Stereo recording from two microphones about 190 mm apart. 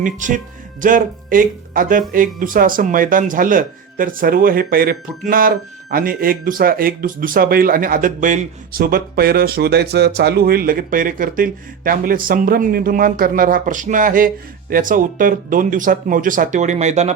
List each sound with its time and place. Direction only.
0.0 s speech: 40° right (ahead or behind)